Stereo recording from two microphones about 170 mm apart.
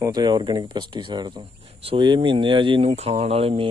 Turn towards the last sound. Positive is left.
turn(degrees=-35)  # may be behind; listen again after turning